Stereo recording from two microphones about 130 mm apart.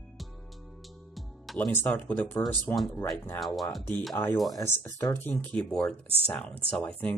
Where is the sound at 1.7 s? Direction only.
15° left (ahead or behind).